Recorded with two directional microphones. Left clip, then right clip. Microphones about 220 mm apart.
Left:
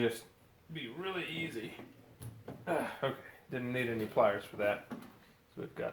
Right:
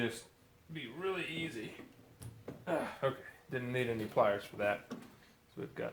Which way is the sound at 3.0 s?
20° right (ahead or behind).